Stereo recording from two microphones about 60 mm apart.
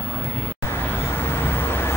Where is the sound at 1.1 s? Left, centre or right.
Left.